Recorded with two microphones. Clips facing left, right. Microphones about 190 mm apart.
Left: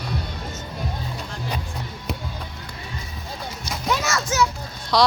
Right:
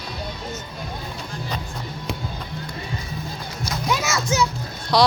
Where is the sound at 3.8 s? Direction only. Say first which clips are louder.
Left 1 dB; 5° right (ahead or behind).